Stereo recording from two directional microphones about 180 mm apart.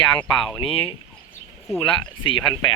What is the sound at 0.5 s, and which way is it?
Speech, 30° left (ahead or behind).